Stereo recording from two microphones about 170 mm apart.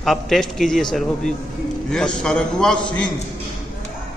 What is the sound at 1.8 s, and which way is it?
A man's voice, 5° left (ahead or behind).